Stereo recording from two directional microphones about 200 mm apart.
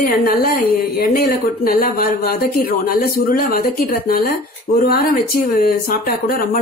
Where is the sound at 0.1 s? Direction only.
45° left (ahead or behind).